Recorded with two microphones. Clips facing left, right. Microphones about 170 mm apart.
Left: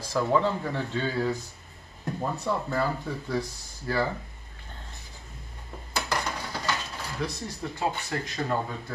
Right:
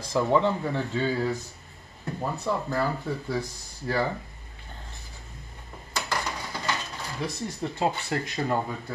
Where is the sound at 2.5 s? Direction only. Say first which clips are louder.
Right 1 dB; 5° right (ahead or behind).